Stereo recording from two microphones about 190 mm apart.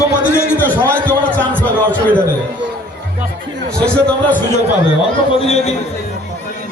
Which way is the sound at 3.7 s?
5° left (ahead or behind).